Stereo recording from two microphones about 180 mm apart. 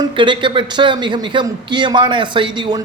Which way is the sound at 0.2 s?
25° right (ahead or behind).